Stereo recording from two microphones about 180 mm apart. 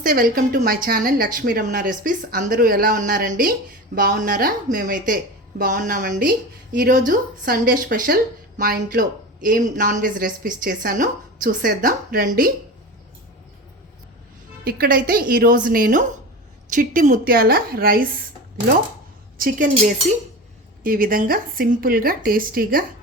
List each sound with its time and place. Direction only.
0.0 s speech: 50° right (ahead or behind)
14.6 s a woman's voice: 55° right (ahead or behind)
19.4 s speech: 50° right (ahead or behind)
20.8 s speech: 55° right (ahead or behind)